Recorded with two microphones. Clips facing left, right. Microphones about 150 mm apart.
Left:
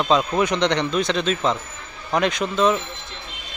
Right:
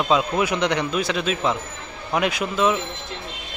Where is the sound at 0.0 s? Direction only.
5° right (ahead or behind).